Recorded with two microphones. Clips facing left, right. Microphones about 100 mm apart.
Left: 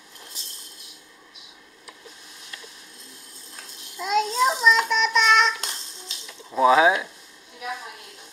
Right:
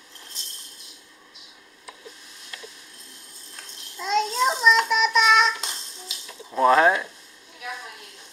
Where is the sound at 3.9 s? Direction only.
5° left (ahead or behind).